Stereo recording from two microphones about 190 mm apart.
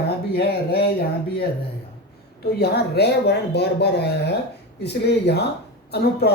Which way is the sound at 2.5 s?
55° left (ahead or behind).